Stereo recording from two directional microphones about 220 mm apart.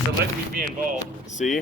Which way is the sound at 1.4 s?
35° left (ahead or behind).